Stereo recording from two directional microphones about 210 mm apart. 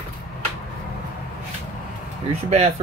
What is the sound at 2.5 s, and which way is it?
Speech, 35° right (ahead or behind).